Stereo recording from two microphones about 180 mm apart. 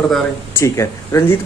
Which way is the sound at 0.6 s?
15° left (ahead or behind).